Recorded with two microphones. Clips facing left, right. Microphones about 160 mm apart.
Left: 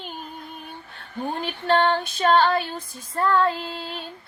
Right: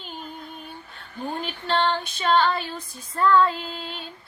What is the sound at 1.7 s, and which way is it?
Female singing, 50° left (ahead or behind).